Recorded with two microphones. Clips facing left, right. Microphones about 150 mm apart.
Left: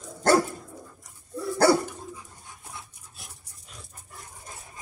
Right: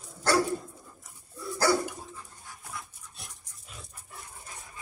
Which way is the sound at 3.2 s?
Centre (ahead or behind).